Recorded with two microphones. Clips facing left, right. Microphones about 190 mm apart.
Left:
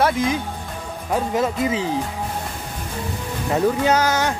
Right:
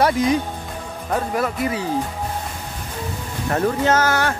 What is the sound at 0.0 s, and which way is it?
Speech, centre (ahead or behind).